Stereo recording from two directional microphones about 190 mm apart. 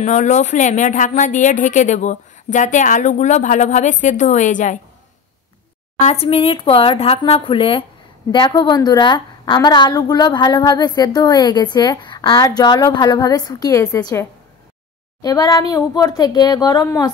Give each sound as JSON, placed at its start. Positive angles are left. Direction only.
{"t": 0.0, "sound": "a woman's voice", "side_deg": 40}
{"t": 6.0, "sound": "a woman's voice", "side_deg": 30}
{"t": 15.2, "sound": "a woman's voice", "side_deg": 20}